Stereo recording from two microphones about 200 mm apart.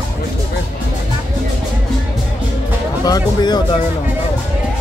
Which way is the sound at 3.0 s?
20° left (ahead or behind).